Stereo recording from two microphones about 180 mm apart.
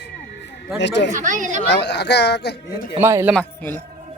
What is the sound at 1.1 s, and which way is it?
Speech, 45° right (ahead or behind).